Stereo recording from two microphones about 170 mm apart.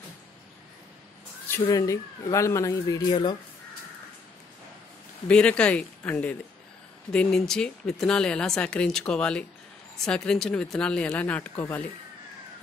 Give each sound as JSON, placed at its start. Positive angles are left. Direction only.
{"t": 1.7, "sound": "speech", "side_deg": 20}
{"t": 5.3, "sound": "speech", "side_deg": 5}